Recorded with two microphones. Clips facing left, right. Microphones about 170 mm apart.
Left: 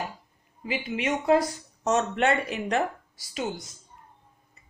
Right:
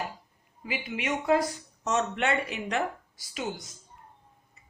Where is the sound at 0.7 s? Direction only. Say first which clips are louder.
Left 4 dB; 30° left (ahead or behind).